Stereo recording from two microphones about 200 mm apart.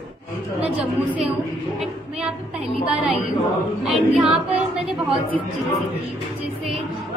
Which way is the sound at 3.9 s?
Centre (ahead or behind).